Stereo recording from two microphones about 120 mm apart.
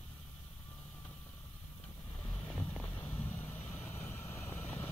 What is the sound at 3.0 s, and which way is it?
Vehicle, 15° left (ahead or behind).